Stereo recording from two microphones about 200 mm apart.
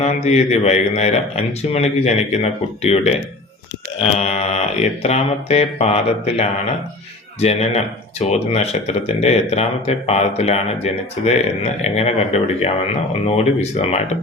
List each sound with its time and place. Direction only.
0.0 s speech: 35° left (ahead or behind)